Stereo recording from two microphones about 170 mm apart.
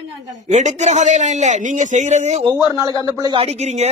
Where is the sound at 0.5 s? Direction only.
45° right (ahead or behind).